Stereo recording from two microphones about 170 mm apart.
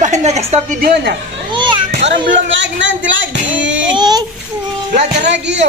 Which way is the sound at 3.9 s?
25° right (ahead or behind).